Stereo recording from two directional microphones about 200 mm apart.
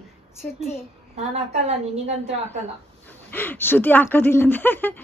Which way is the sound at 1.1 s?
30° right (ahead or behind).